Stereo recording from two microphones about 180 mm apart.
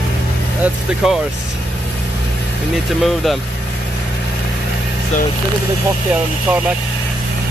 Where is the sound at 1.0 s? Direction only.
Centre (ahead or behind).